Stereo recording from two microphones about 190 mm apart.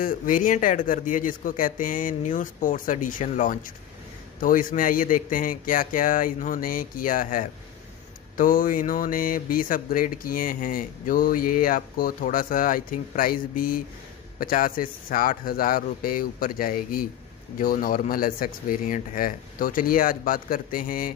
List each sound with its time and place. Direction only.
0.0 s speech: 45° left (ahead or behind)